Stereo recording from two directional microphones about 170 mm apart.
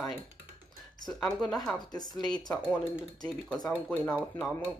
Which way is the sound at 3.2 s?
5° left (ahead or behind).